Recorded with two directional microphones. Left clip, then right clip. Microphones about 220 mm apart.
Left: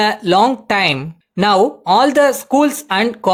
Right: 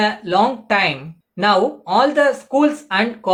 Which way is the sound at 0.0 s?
50° left (ahead or behind).